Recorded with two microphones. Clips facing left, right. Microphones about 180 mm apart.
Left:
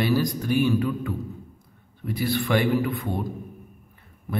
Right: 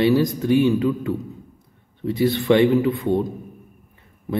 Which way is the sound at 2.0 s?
20° right (ahead or behind).